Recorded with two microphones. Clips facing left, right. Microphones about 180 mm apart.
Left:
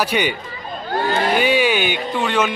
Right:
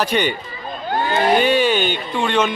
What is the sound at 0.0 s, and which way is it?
Speech, 10° left (ahead or behind).